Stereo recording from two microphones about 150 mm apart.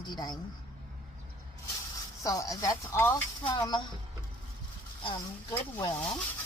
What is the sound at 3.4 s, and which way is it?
Speech, 30° left (ahead or behind).